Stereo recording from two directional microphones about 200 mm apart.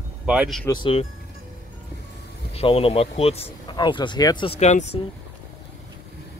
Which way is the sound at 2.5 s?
30° left (ahead or behind).